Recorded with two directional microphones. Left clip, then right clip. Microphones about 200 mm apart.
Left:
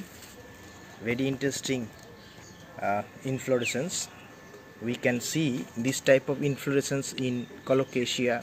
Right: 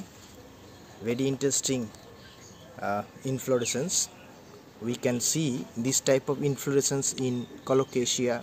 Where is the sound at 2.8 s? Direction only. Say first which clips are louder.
Left 1 dB; 15° right (ahead or behind).